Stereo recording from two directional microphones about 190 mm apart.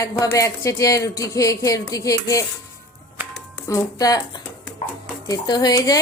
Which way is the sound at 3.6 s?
15° left (ahead or behind).